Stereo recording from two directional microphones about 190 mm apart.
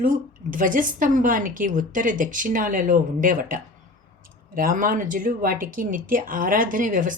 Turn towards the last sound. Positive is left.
turn(degrees=-45)  # may be behind; listen again after turning